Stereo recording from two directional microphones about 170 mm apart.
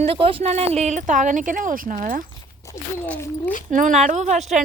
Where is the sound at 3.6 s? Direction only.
50° right (ahead or behind).